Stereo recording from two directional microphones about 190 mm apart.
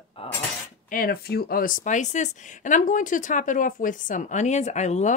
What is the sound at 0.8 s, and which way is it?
Speech, 50° left (ahead or behind).